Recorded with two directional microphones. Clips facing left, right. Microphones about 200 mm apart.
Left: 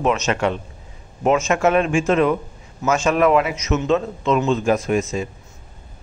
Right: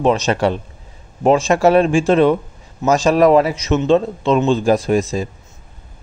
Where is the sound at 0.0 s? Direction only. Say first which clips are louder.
Right 4 dB; 35° right (ahead or behind).